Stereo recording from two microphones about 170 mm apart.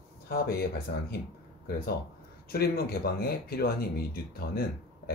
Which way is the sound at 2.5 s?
65° left (ahead or behind).